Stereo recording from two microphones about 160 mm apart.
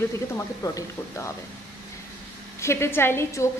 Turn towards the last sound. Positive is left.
turn(degrees=15)  # may be behind; listen again after turning